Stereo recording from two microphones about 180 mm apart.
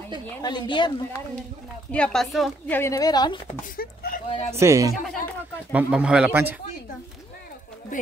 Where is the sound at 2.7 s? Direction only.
15° left (ahead or behind).